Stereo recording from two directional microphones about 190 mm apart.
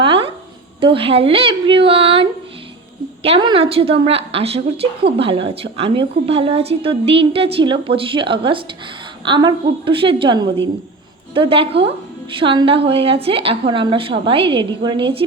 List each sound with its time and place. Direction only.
0.0 s a sound: 30° right (ahead or behind)
0.8 s a woman's voice: 30° right (ahead or behind)
3.2 s a woman's voice: 30° right (ahead or behind)